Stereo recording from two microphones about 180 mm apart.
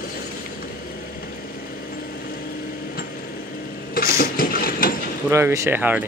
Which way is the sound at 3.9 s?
55° left (ahead or behind).